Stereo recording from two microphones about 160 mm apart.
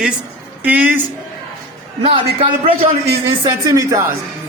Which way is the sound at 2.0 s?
35° right (ahead or behind).